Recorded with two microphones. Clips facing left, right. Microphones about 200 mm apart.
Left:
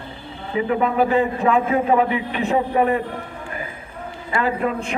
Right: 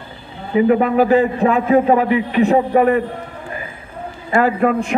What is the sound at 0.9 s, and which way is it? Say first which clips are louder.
Speech: right 5 dB; 35° right (ahead or behind).